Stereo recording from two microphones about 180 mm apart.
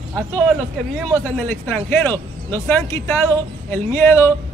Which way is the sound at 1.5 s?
10° left (ahead or behind).